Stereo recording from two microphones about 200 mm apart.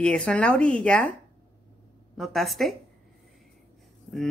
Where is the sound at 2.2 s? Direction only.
Centre (ahead or behind).